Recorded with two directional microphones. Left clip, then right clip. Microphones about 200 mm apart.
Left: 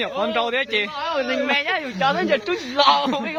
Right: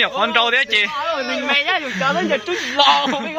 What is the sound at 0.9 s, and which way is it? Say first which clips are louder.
A woman's voice: right 2 dB; 40° right (ahead or behind).